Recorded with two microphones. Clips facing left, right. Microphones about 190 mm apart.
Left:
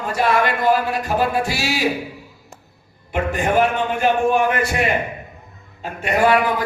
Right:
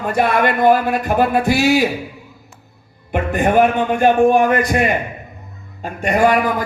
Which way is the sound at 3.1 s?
55° right (ahead or behind).